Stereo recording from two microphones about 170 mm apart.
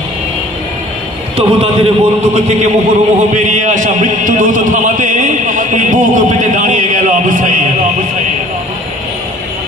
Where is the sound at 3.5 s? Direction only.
45° right (ahead or behind).